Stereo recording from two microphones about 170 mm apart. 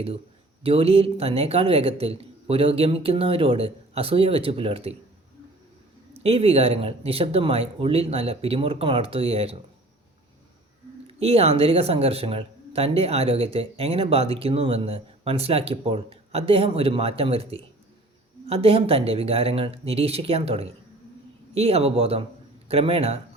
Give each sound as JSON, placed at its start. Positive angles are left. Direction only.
{"t": 0.6, "sound": "speech", "side_deg": -35}
{"t": 6.1, "sound": "speech", "side_deg": -35}
{"t": 11.0, "sound": "speech", "side_deg": -35}